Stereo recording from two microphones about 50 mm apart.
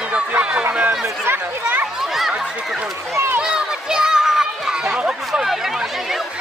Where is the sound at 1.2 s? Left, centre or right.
Right.